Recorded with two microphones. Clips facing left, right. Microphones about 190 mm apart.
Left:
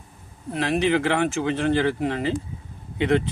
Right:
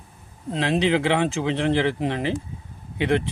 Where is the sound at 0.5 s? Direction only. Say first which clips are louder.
Even; 20° right (ahead or behind).